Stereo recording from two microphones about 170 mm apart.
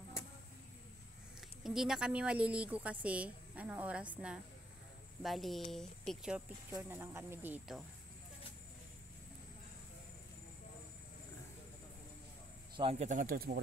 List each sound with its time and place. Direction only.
1.6 s a woman's voice: centre (ahead or behind)
6.7 s a woman's voice: 15° right (ahead or behind)
13.0 s speech: 50° right (ahead or behind)